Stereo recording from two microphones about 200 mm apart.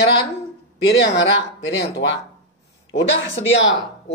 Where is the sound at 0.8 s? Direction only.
65° left (ahead or behind).